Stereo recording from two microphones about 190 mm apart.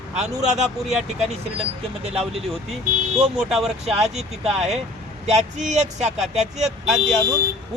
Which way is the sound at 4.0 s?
35° right (ahead or behind).